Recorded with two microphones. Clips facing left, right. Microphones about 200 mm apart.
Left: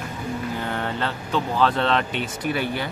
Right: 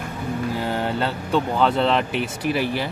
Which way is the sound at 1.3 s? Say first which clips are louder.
Right 2 dB; 5° right (ahead or behind).